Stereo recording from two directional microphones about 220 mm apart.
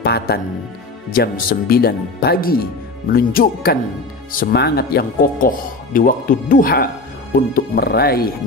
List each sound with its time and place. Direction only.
0.0 s speech: 45° left (ahead or behind)